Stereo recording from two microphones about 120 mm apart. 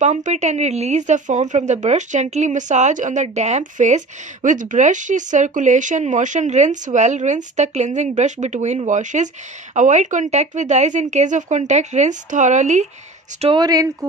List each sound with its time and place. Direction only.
0.0 s a woman's voice: 80° right
13.6 s speech: 30° right (ahead or behind)